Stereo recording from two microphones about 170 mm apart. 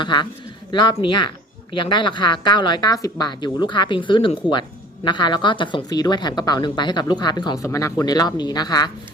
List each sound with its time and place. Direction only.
0.0 s a woman's voice: 25° left (ahead or behind)